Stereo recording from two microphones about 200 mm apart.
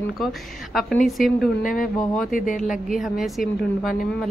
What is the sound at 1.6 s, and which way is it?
Speech, 45° left (ahead or behind).